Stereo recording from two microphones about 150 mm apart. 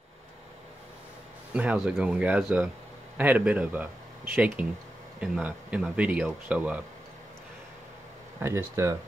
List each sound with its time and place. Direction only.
1.5 s speech: 10° right (ahead or behind)
8.4 s speech: 15° right (ahead or behind)